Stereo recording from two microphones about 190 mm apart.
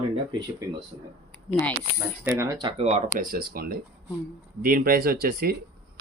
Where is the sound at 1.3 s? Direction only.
5° left (ahead or behind).